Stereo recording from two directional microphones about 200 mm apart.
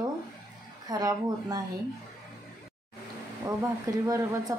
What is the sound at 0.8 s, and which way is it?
Speech, 20° right (ahead or behind).